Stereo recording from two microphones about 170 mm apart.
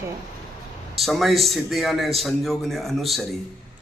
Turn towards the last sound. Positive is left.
turn(degrees=0)  # may be behind; listen again after turning